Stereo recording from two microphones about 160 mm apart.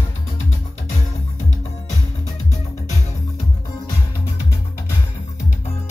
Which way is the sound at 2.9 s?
45° left (ahead or behind).